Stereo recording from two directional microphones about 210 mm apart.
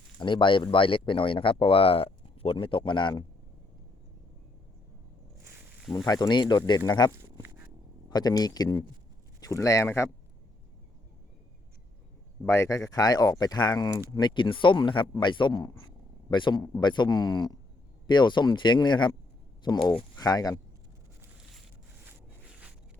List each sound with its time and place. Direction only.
0.2 s speech: 25° left (ahead or behind)
5.5 s snake: 10° right (ahead or behind)
6.1 s speech: 20° left (ahead or behind)
8.1 s speech: 20° left (ahead or behind)
12.5 s speech: 15° left (ahead or behind)
22.0 s a sound: 5° right (ahead or behind)